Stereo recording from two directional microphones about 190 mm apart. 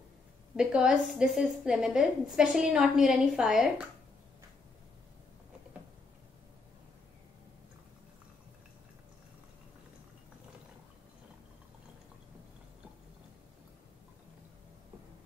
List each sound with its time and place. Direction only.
0.6 s a woman's voice: 5° right (ahead or behind)